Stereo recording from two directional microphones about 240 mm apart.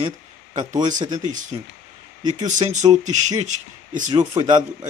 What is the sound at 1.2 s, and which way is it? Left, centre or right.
A man's voice, right.